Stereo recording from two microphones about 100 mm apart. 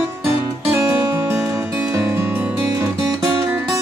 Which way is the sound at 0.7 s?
35° right (ahead or behind).